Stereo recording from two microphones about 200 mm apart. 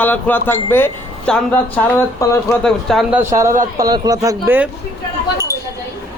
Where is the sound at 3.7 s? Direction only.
20° right (ahead or behind).